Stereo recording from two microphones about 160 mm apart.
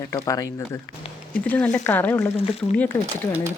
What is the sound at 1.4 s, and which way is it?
A woman's voice, 10° left (ahead or behind).